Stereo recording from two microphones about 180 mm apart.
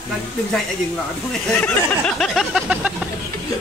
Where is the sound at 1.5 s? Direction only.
5° left (ahead or behind).